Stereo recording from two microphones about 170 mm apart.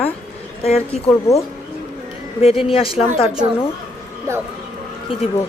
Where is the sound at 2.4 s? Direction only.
35° left (ahead or behind).